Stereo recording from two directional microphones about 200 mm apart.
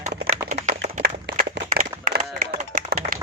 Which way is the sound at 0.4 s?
35° right (ahead or behind).